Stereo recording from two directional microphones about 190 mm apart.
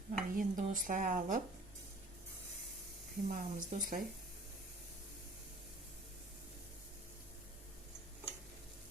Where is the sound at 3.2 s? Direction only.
45° right (ahead or behind).